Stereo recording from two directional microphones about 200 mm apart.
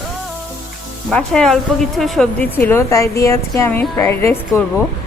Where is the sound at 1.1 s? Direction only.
5° left (ahead or behind).